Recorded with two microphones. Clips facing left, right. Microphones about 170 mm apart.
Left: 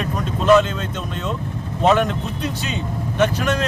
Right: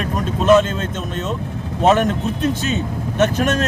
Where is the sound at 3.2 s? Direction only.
45° right (ahead or behind).